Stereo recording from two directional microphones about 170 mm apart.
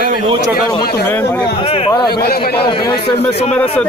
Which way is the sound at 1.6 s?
35° left (ahead or behind).